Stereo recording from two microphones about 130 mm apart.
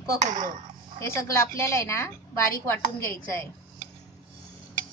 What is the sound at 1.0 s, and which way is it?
A woman's voice, 20° left (ahead or behind).